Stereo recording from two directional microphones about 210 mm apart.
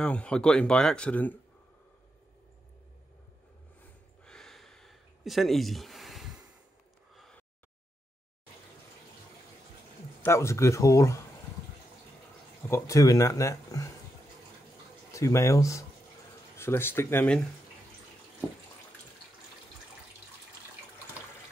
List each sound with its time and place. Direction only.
0.0 s speech: 5° left (ahead or behind)
4.2 s a sound: 5° left (ahead or behind)
7.2 s gasp: 5° left (ahead or behind)
10.2 s speech: 15° left (ahead or behind)
12.6 s speech: 15° left (ahead or behind)
15.1 s speech: 15° left (ahead or behind)